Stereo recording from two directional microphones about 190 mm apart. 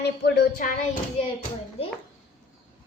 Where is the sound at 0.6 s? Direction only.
45° left (ahead or behind).